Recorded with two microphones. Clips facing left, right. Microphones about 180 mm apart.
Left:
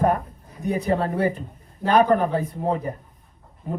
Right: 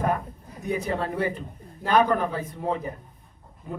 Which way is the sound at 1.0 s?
40° left (ahead or behind).